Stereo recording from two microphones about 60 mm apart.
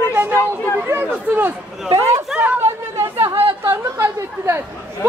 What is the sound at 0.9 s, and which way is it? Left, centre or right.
Speech, right.